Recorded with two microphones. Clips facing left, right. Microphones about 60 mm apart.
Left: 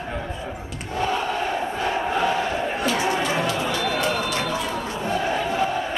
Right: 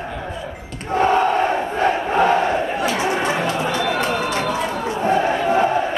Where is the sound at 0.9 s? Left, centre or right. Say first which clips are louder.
Right 8 dB; right.